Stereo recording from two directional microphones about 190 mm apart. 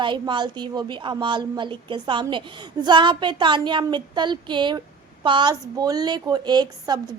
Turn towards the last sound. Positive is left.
turn(degrees=-20)  # may be behind; listen again after turning